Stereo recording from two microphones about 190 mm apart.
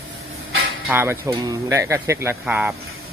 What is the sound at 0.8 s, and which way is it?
Speech, 10° right (ahead or behind).